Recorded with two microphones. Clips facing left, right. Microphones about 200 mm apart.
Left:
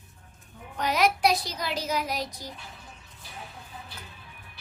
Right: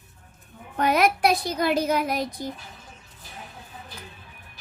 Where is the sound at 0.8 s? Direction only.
55° right (ahead or behind).